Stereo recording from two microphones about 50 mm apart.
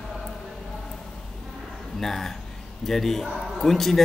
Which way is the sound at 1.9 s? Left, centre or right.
Centre.